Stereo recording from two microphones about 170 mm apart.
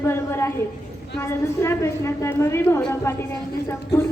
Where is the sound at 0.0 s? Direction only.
15° left (ahead or behind).